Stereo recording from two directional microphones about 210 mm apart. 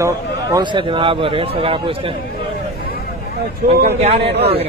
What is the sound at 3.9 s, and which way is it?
Speech, 30° right (ahead or behind).